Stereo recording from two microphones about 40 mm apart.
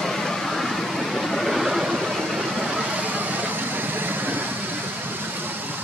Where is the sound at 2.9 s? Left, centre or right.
Right.